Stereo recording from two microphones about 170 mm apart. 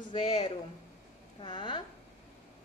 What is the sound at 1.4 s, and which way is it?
Speech, 30° left (ahead or behind).